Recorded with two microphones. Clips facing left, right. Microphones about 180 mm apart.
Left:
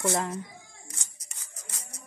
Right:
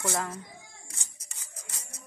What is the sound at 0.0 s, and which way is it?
Speech, 20° left (ahead or behind).